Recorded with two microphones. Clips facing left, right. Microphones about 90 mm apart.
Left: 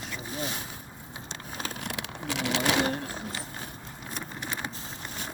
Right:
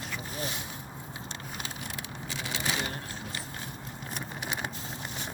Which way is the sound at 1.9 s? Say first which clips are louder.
Left 5 dB; 75° left (ahead or behind).